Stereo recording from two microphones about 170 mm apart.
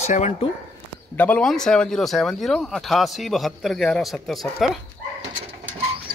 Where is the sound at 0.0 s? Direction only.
40° left (ahead or behind).